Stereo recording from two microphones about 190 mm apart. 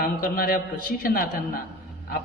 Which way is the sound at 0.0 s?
50° left (ahead or behind).